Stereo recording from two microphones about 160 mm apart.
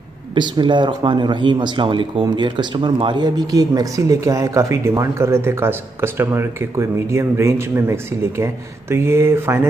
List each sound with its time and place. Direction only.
0.3 s speech: 30° right (ahead or behind)